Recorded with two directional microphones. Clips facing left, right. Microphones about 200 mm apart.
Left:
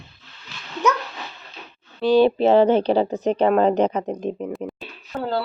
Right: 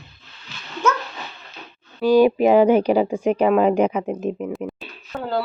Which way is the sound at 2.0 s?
10° right (ahead or behind).